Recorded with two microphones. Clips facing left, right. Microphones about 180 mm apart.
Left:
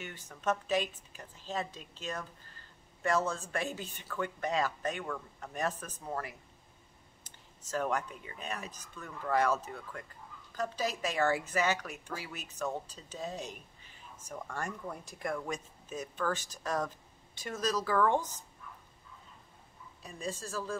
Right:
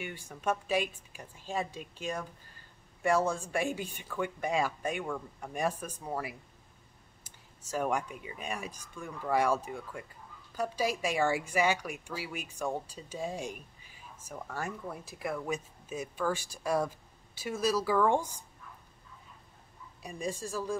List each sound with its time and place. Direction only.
0.0 s speech: 10° right (ahead or behind)
20.0 s speech: 15° right (ahead or behind)